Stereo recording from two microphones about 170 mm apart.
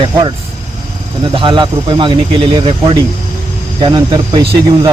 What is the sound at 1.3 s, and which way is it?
Speech, 30° right (ahead or behind).